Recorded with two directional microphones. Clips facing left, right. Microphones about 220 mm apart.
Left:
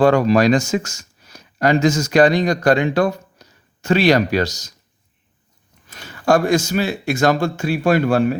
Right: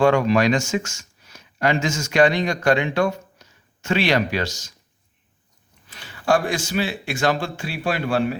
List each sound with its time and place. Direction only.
0.0 s speech: 35° left (ahead or behind)
5.9 s speech: 45° left (ahead or behind)